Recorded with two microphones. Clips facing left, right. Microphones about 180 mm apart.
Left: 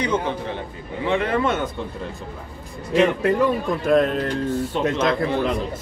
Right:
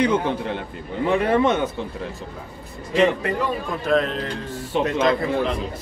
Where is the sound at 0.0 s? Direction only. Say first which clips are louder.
Right 3 dB; 55° right (ahead or behind).